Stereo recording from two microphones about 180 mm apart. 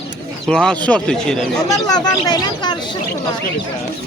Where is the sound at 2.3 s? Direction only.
25° left (ahead or behind).